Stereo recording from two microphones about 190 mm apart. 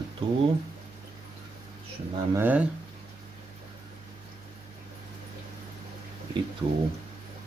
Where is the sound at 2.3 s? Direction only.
10° right (ahead or behind).